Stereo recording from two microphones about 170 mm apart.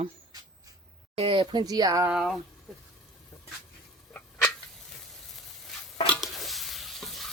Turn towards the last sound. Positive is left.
turn(degrees=0)  # may be behind; listen again after turning